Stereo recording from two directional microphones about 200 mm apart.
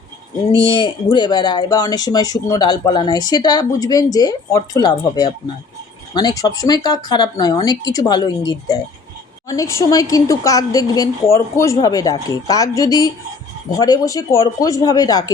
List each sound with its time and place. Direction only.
0.5 s a woman's voice: 25° left (ahead or behind)